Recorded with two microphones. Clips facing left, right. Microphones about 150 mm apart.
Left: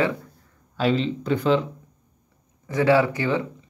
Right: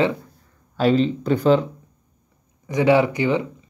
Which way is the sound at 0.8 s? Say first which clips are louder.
Right 4 dB; 45° right (ahead or behind).